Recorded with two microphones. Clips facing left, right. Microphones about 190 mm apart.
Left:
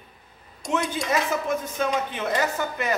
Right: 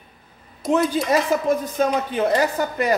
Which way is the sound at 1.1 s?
35° right (ahead or behind).